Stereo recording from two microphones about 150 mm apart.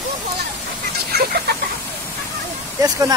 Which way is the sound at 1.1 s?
90° right.